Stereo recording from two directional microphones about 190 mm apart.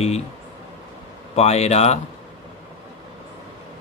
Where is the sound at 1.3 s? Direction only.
35° left (ahead or behind).